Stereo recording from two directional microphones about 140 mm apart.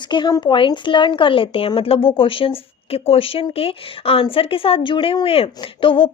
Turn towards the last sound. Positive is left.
turn(degrees=40)  # may be behind; listen again after turning